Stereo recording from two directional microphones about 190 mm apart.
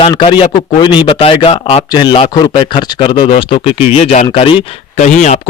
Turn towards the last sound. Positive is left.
turn(degrees=40)  # may be behind; listen again after turning